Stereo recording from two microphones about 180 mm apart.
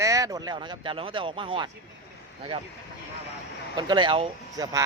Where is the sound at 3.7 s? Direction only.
25° right (ahead or behind).